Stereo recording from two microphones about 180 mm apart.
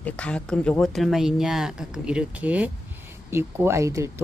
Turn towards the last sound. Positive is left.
turn(degrees=-15)  # may be behind; listen again after turning